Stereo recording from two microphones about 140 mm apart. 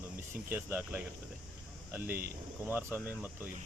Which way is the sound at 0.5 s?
15° right (ahead or behind).